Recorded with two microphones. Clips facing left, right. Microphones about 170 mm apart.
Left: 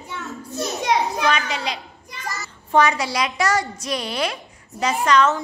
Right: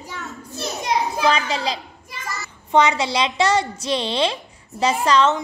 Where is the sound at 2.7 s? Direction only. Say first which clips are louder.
Right 1 dB; 20° right (ahead or behind).